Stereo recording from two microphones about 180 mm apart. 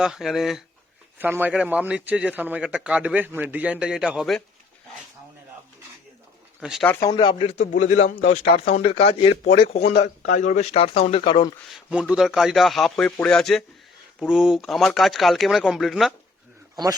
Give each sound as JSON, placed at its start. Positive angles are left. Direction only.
{"t": 0.0, "sound": "a man's voice", "side_deg": 0}
{"t": 6.6, "sound": "speech", "side_deg": -5}
{"t": 7.0, "sound": "speech", "side_deg": 25}
{"t": 11.7, "sound": "speech", "side_deg": -5}